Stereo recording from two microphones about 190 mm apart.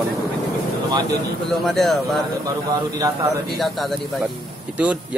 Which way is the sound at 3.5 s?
Centre (ahead or behind).